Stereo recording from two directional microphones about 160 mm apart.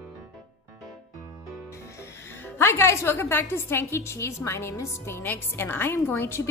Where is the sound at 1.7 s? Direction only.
20° left (ahead or behind).